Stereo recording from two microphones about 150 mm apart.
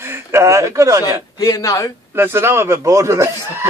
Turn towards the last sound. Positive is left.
turn(degrees=-20)  # may be behind; listen again after turning